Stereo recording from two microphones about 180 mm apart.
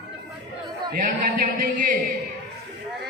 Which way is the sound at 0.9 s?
50° right (ahead or behind).